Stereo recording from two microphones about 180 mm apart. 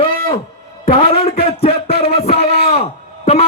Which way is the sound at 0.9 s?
30° left (ahead or behind).